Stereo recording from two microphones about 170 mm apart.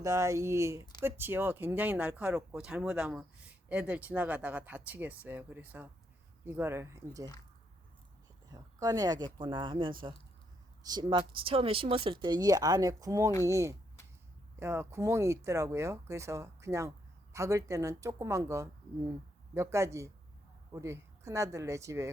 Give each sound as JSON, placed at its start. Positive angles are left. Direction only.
{"t": 0.0, "sound": "speech", "side_deg": -20}
{"t": 8.4, "sound": "speech", "side_deg": -20}